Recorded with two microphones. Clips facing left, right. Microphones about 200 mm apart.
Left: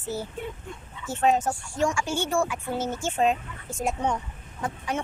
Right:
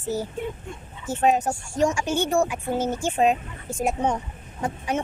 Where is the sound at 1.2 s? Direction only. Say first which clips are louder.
Right 2 dB; 15° right (ahead or behind).